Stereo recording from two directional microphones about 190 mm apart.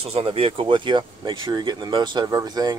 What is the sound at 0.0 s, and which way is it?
Speech, 30° right (ahead or behind).